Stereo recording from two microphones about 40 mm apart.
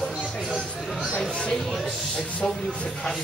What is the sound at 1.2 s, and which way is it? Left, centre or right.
Speech, left.